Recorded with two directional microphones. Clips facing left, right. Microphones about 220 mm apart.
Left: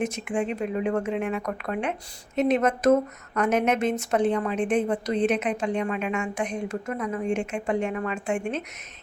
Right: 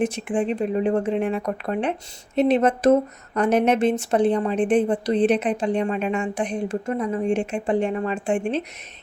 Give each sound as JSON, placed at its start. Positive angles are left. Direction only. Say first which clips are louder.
{"t": 0.0, "sound": "speech", "louder": "right 4 dB", "side_deg": -30}